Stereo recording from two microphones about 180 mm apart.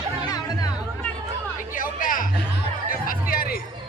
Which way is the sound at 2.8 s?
50° left (ahead or behind).